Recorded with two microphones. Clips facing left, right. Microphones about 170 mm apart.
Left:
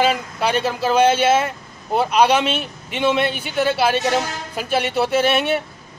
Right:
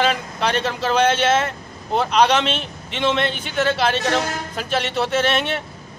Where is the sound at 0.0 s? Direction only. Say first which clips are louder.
Left 2 dB; 5° left (ahead or behind).